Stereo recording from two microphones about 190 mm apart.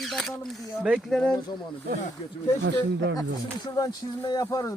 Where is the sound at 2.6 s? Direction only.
70° right (ahead or behind).